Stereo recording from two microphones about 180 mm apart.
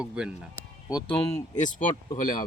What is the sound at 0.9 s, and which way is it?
Speech, 20° left (ahead or behind).